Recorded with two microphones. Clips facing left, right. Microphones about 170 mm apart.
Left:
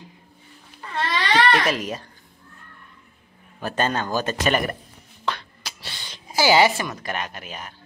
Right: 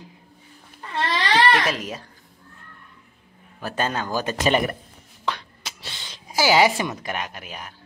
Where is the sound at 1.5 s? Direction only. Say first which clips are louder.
Left 1 dB; centre (ahead or behind).